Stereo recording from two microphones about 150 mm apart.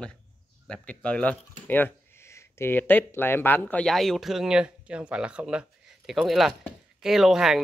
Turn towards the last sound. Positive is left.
turn(degrees=0)  # may be behind; listen again after turning